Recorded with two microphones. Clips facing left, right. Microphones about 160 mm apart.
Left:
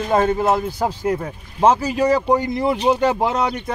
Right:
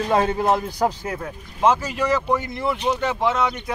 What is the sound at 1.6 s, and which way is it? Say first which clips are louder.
Speech: left 4 dB; 35° left (ahead or behind).